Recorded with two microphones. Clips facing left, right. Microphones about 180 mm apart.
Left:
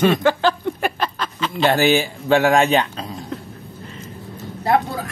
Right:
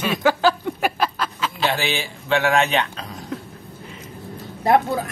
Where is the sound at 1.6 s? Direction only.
45° left (ahead or behind).